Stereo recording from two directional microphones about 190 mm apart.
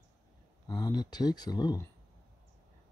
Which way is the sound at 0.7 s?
20° left (ahead or behind).